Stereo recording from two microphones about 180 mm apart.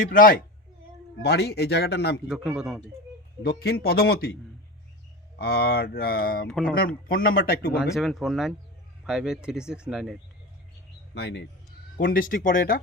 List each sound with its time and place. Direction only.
0.0 s speech: 50° left (ahead or behind)
1.2 s speech: 65° left (ahead or behind)
2.2 s speech: 5° right (ahead or behind)
3.4 s speech: 60° left (ahead or behind)
5.4 s speech: 60° left (ahead or behind)
7.8 s speech: centre (ahead or behind)
11.1 s a man's voice: 70° left (ahead or behind)
11.9 s speech: 50° left (ahead or behind)